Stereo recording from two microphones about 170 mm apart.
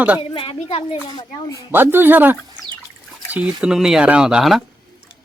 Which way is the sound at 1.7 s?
10° right (ahead or behind).